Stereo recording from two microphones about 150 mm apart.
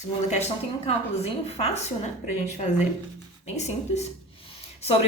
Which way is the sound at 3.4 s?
50° left (ahead or behind).